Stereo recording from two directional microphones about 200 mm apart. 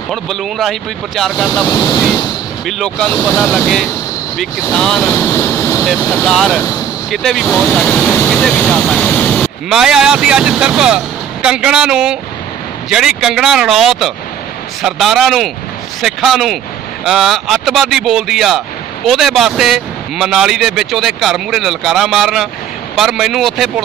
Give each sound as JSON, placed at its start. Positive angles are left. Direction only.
{"t": 0.1, "sound": "speech", "side_deg": 0}
{"t": 1.7, "sound": "speech", "side_deg": 20}
{"t": 2.6, "sound": "speech", "side_deg": 5}